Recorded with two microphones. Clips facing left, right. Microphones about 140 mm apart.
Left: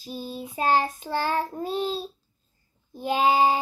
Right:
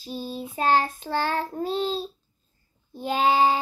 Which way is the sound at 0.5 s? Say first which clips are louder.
Right 1 dB; 20° left (ahead or behind).